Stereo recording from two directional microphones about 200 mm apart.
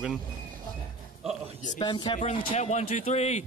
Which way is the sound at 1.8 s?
20° left (ahead or behind).